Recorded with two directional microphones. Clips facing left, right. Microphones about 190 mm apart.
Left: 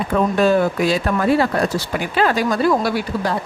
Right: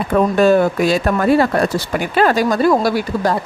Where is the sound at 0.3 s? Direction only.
50° right (ahead or behind).